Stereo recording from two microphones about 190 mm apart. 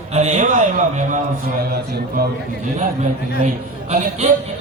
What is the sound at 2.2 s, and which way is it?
Speech, 55° right (ahead or behind).